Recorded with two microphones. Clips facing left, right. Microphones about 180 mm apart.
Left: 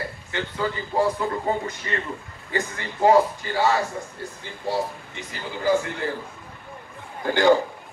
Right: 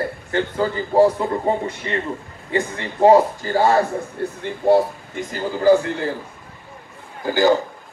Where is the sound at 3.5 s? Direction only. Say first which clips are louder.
Right 7 dB; 45° right (ahead or behind).